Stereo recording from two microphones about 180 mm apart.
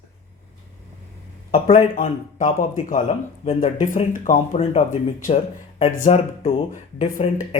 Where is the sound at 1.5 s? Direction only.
40° left (ahead or behind).